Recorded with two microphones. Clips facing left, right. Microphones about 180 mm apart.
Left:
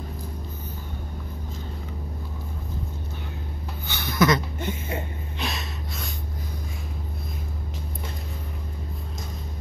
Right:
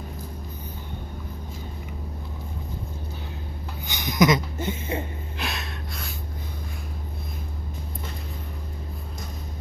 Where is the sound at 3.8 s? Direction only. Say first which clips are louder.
Right 1 dB; 15° right (ahead or behind).